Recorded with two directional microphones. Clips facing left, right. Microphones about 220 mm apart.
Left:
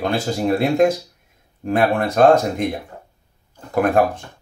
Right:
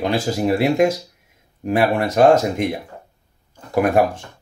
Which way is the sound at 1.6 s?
10° right (ahead or behind).